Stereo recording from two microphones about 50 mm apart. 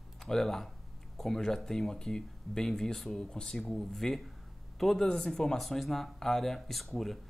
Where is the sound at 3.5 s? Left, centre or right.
Centre.